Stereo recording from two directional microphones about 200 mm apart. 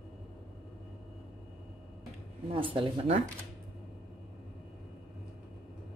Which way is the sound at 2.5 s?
25° right (ahead or behind).